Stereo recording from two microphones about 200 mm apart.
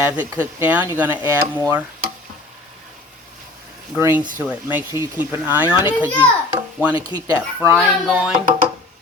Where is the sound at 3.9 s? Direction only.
15° right (ahead or behind).